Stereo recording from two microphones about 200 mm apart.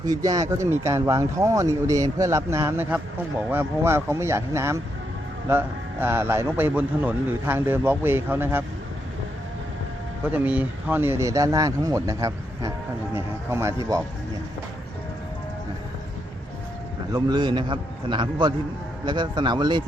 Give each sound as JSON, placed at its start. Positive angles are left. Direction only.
{"t": 0.0, "sound": "a man's voice", "side_deg": -20}
{"t": 10.3, "sound": "a man's voice", "side_deg": -10}
{"t": 17.1, "sound": "a man's voice", "side_deg": -20}